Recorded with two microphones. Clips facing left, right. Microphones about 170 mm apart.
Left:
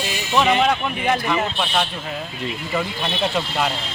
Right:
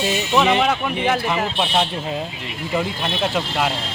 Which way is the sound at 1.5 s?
20° right (ahead or behind).